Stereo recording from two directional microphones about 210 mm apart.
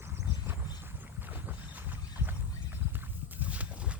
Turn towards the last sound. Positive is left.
turn(degrees=-5)  # may be behind; listen again after turning